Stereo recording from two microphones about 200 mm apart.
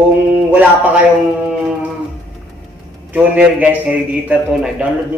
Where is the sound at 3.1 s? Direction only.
5° right (ahead or behind).